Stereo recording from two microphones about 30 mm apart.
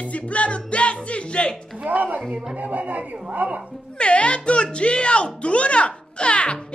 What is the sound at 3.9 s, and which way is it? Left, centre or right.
Speech, left.